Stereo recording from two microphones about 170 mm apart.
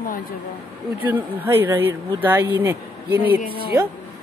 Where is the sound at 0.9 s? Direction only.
10° right (ahead or behind).